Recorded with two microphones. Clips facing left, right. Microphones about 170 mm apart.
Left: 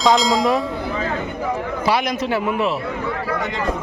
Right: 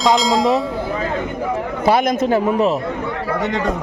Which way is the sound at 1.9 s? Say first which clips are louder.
Right 6 dB; 45° right (ahead or behind).